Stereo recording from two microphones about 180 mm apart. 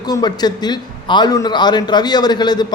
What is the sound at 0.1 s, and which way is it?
A man's voice, 25° left (ahead or behind).